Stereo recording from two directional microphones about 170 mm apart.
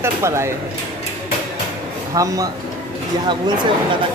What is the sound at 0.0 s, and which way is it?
Speech, 15° right (ahead or behind).